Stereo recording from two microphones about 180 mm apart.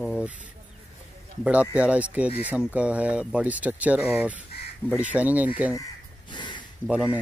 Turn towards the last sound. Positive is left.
turn(degrees=-5)  # may be behind; listen again after turning